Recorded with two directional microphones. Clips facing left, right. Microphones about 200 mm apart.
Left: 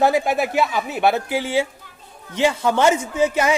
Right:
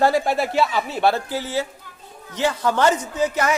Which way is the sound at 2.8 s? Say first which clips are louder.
Left 2 dB; 10° left (ahead or behind).